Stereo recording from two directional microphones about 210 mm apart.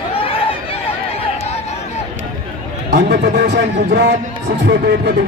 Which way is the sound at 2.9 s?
55° right (ahead or behind).